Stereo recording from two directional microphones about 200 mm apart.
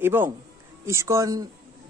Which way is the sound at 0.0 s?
10° right (ahead or behind).